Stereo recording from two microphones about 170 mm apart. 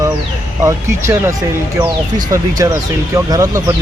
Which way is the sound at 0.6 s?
15° right (ahead or behind).